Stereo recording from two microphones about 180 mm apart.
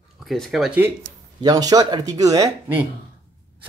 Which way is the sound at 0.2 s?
Centre (ahead or behind).